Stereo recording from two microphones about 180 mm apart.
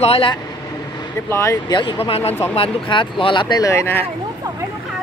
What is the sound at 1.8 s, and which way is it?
Speech, 30° left (ahead or behind).